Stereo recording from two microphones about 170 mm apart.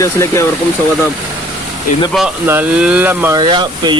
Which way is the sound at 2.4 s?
10° right (ahead or behind).